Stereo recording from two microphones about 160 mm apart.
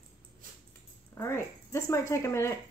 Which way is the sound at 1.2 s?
15° left (ahead or behind).